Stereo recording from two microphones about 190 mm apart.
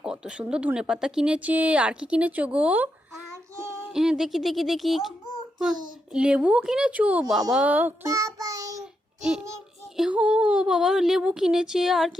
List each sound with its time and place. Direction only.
0.0 s speech: 5° right (ahead or behind)
3.6 s child singing: 15° right (ahead or behind)
3.8 s speech: centre (ahead or behind)
6.1 s speech: 5° right (ahead or behind)
7.5 s child singing: 10° right (ahead or behind)
10.0 s speech: 5° right (ahead or behind)